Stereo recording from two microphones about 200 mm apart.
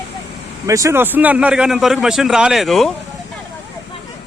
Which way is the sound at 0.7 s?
15° right (ahead or behind).